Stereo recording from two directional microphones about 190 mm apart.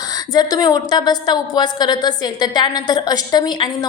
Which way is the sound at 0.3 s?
20° left (ahead or behind).